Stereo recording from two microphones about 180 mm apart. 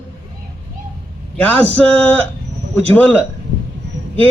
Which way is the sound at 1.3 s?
10° left (ahead or behind).